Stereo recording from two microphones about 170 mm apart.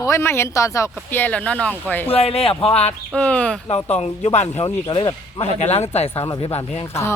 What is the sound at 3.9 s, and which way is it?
Speech, 40° left (ahead or behind).